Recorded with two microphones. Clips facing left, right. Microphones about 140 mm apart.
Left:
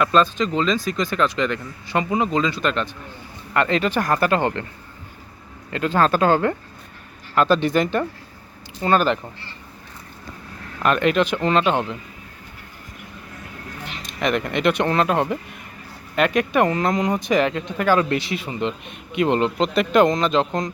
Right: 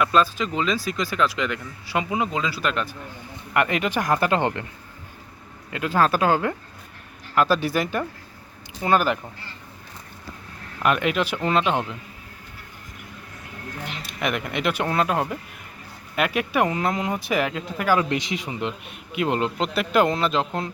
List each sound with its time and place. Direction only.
0.0 s speech: 5° right (ahead or behind)
5.7 s speech: 10° right (ahead or behind)
10.8 s speech: 10° right (ahead or behind)
14.2 s speech: 5° right (ahead or behind)